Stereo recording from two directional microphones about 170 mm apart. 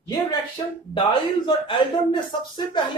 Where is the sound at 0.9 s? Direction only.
30° left (ahead or behind).